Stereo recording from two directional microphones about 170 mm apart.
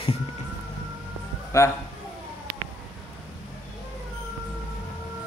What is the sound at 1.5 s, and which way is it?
Speech, 15° left (ahead or behind).